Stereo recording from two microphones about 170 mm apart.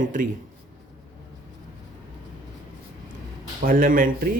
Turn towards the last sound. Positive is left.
turn(degrees=-55)  # may be behind; listen again after turning